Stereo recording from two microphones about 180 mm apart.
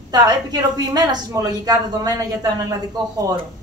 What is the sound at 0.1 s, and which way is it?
A woman's voice, 20° right (ahead or behind).